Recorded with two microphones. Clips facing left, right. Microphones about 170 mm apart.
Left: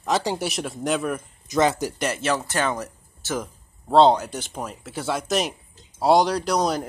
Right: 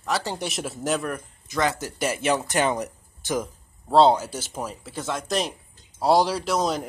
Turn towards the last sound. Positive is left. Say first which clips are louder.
# left 2 dB
turn(degrees=0)  # may be behind; listen again after turning